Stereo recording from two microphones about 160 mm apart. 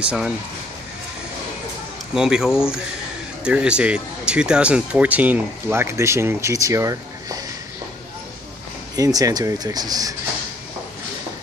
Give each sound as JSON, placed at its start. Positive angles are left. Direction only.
{"t": 0.0, "sound": "speech", "side_deg": -5}
{"t": 2.1, "sound": "speech", "side_deg": -5}
{"t": 8.9, "sound": "speech", "side_deg": -20}